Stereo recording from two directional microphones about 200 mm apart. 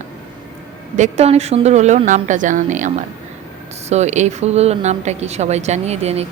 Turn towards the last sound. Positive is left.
turn(degrees=-30)  # may be behind; listen again after turning